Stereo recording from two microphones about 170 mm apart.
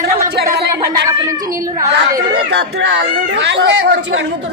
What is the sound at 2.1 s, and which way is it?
Speech, 75° right (ahead or behind).